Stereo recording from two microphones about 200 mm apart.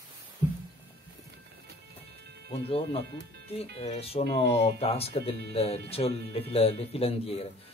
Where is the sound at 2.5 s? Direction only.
30° left (ahead or behind).